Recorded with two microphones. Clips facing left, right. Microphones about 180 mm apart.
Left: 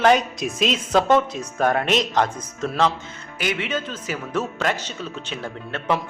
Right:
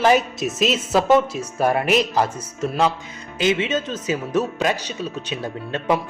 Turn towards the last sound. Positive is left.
turn(degrees=-15)  # may be behind; listen again after turning